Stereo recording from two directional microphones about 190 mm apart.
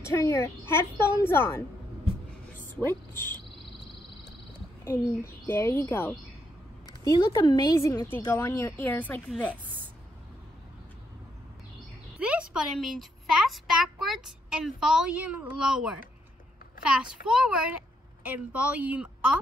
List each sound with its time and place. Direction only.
0.0 s a woman's voice: 15° left (ahead or behind)
4.8 s a woman's voice: 15° left (ahead or behind)
9.3 s a child's voice: centre (ahead or behind)
12.2 s a child's voice: 5° right (ahead or behind)